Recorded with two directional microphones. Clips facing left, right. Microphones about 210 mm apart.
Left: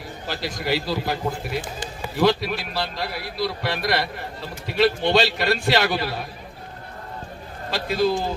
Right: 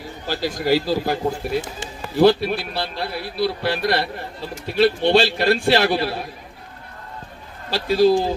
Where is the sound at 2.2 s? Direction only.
30° right (ahead or behind).